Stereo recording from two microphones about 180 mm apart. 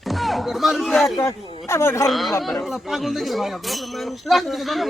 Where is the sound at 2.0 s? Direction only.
Centre (ahead or behind).